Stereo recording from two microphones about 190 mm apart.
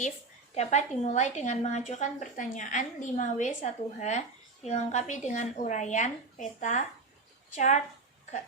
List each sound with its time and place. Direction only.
0.5 s a woman's voice: 35° left (ahead or behind)